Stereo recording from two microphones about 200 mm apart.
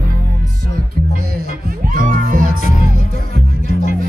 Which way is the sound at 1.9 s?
45° right (ahead or behind).